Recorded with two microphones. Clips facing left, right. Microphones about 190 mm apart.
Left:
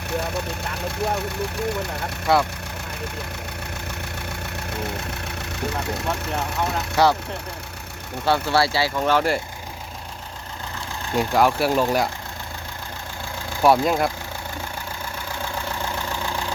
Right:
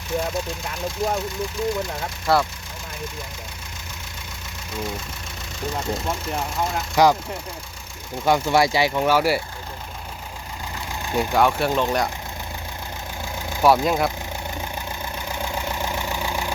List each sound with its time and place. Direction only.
0.1 s speech: 65° left (ahead or behind)
2.2 s speech: centre (ahead or behind)
4.3 s engine: 65° left (ahead or behind)
6.9 s speech: 15° right (ahead or behind)
8.2 s speech: 15° right (ahead or behind)
11.2 s speech: centre (ahead or behind)
13.6 s speech: centre (ahead or behind)
15.3 s vehicle: 15° right (ahead or behind)